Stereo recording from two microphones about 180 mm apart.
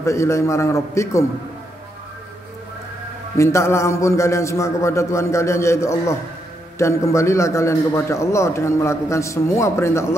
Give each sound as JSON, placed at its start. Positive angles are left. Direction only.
{"t": 0.0, "sound": "a man's voice", "side_deg": 15}
{"t": 3.3, "sound": "a man's voice", "side_deg": 15}